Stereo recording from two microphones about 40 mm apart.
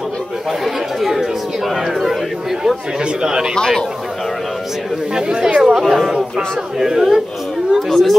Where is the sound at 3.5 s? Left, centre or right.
Centre.